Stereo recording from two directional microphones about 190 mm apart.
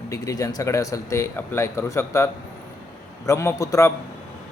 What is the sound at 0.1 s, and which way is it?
Speech, 15° left (ahead or behind).